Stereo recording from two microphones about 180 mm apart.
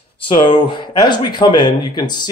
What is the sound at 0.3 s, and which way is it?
Speech, 25° left (ahead or behind).